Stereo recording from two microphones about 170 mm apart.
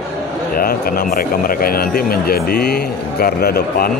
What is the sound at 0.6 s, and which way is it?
Speech, 60° left (ahead or behind).